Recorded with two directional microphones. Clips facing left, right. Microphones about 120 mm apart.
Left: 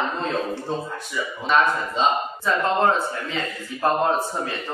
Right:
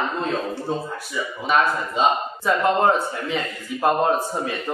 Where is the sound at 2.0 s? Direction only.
10° right (ahead or behind).